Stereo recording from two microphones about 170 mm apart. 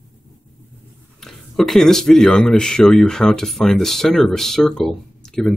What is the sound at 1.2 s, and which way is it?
Speech, centre (ahead or behind).